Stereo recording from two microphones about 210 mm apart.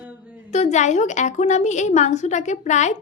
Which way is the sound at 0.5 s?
35° left (ahead or behind).